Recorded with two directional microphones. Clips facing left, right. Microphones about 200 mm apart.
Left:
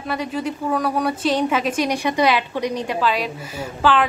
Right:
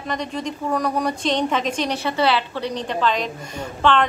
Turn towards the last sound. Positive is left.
turn(degrees=5)  # may be behind; listen again after turning